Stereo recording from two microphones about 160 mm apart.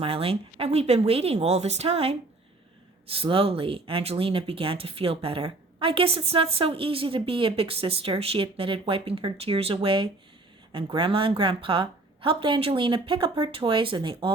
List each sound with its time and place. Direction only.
0.0 s speech: 35° right (ahead or behind)
3.2 s speech: 35° right (ahead or behind)